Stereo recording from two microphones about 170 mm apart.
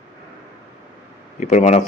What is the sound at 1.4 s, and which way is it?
Speech, 45° left (ahead or behind).